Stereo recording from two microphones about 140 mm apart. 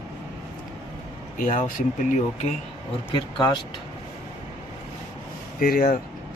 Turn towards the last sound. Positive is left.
turn(degrees=80)